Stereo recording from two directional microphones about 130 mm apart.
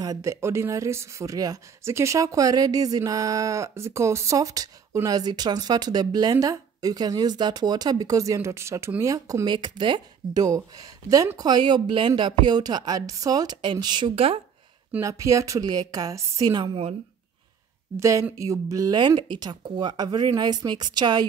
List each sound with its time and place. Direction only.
0.0 s speech: 25° right (ahead or behind); by 14.4 s 45° right (ahead or behind)
14.9 s speech: 20° right (ahead or behind)
17.9 s speech: 25° right (ahead or behind)